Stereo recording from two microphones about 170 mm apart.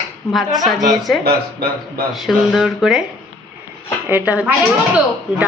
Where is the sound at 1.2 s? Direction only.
65° right (ahead or behind).